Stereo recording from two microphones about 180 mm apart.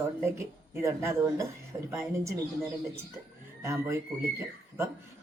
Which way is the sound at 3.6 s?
15° right (ahead or behind).